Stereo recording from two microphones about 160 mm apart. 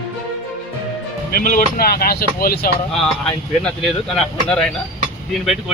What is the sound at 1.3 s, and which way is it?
Speech, 60° left (ahead or behind).